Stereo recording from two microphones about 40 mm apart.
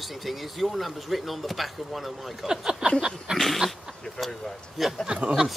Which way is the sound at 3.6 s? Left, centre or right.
Right.